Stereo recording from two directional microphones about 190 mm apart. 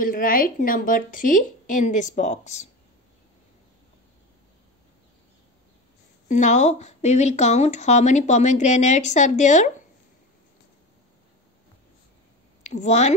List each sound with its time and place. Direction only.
0.0 s a woman's voice: 45° left (ahead or behind)
6.2 s speech: 40° left (ahead or behind)
12.6 s speech: 40° left (ahead or behind)